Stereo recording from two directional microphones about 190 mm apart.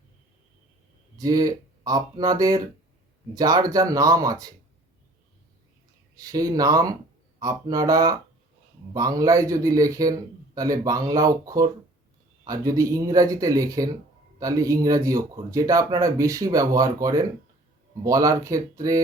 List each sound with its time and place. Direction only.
1.2 s speech: 20° right (ahead or behind)
6.1 s speech: 20° right (ahead or behind)